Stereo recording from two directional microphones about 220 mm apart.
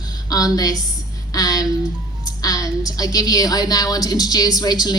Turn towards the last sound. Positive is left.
turn(degrees=20)  # may be behind; listen again after turning